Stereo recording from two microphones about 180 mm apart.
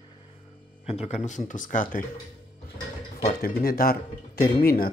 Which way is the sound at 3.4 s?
55° left (ahead or behind).